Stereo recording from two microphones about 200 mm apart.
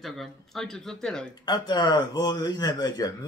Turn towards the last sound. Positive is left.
turn(degrees=20)  # may be behind; listen again after turning